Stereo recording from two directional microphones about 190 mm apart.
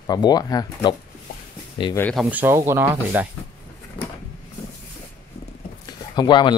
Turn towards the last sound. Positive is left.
turn(degrees=25)  # may be behind; listen again after turning